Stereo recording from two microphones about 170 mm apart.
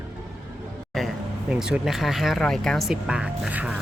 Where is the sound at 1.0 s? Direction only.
Centre (ahead or behind).